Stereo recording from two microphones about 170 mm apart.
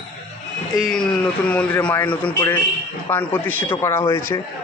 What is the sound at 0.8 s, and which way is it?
A man's voice, 5° left (ahead or behind).